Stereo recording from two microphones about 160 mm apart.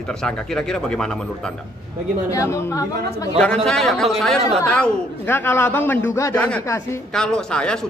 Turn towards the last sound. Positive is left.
turn(degrees=5)  # may be behind; listen again after turning